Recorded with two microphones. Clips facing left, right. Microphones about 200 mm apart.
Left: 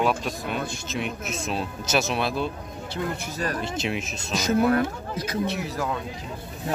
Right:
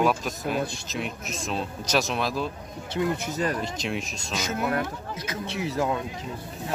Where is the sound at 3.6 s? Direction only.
5° left (ahead or behind).